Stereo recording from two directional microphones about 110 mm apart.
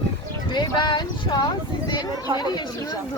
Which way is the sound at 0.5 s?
40° left (ahead or behind).